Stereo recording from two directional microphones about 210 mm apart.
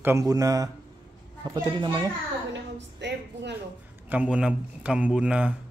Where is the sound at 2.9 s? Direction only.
55° right (ahead or behind).